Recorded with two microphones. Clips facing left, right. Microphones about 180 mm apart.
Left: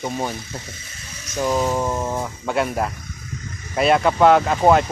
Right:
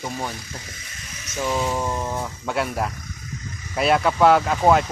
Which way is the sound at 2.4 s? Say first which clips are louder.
Left 3 dB; centre (ahead or behind).